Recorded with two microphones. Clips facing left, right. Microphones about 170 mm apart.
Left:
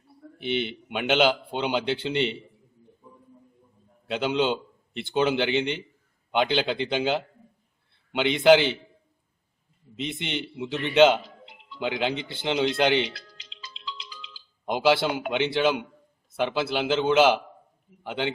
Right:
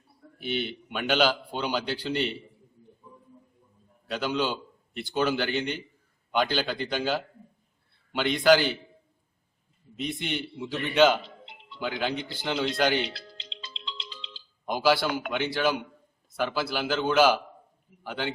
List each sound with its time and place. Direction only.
0.3 s a man's voice: 20° left (ahead or behind)
4.1 s a man's voice: 25° left (ahead or behind)
10.0 s a man's voice: 20° left (ahead or behind)
13.1 s music: 30° right (ahead or behind)
14.7 s a man's voice: 20° left (ahead or behind)